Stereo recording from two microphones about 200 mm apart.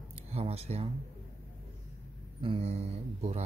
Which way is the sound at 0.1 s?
30° right (ahead or behind).